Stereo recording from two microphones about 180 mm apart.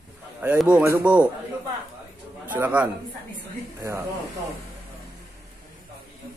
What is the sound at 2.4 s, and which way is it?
Speech, 10° right (ahead or behind).